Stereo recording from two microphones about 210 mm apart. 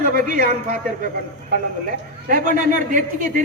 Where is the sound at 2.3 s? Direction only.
40° right (ahead or behind).